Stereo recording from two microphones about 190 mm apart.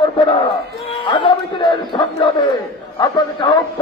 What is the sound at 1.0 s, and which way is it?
A man's voice, 25° left (ahead or behind).